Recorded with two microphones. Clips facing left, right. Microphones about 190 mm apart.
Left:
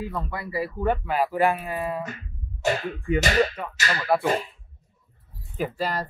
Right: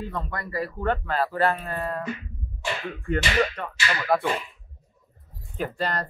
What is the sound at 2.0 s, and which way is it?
Music, 40° left (ahead or behind).